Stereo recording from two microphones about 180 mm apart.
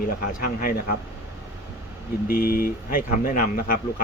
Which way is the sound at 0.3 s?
50° left (ahead or behind).